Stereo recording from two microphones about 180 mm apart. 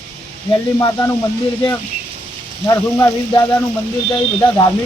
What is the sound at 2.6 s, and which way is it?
Speech, 15° left (ahead or behind).